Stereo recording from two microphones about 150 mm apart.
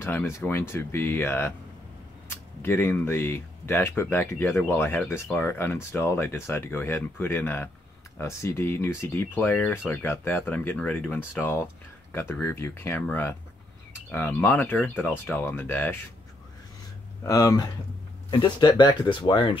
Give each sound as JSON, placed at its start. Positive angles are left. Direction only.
{"t": 0.0, "sound": "speech", "side_deg": 15}
{"t": 17.2, "sound": "speech", "side_deg": 25}